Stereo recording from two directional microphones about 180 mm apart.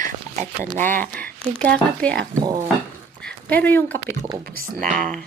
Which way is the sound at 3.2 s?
10° left (ahead or behind).